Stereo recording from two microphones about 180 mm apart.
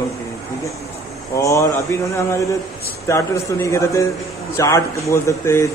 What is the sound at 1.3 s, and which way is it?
Speech, 15° left (ahead or behind).